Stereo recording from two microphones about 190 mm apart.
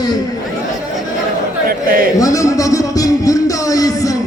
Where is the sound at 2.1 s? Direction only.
15° left (ahead or behind).